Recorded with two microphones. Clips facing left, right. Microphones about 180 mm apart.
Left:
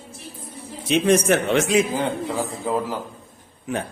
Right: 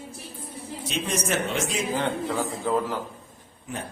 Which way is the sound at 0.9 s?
65° left (ahead or behind).